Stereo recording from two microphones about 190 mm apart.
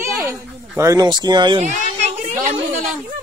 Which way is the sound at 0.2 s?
15° right (ahead or behind).